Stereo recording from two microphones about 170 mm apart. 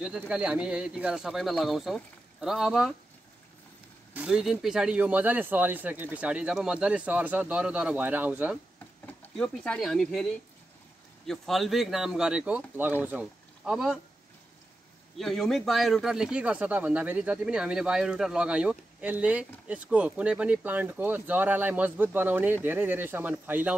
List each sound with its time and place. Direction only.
0.3 s speech: 5° right (ahead or behind)
4.1 s speech: 5° right (ahead or behind)
9.0 s speech: 5° left (ahead or behind)
11.2 s speech: centre (ahead or behind)
15.1 s speech: centre (ahead or behind)